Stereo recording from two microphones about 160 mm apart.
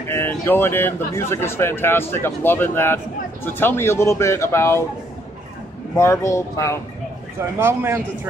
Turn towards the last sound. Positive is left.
turn(degrees=-15)  # may be behind; listen again after turning